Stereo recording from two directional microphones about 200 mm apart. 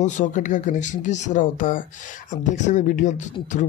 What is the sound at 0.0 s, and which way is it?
Speech, 40° left (ahead or behind).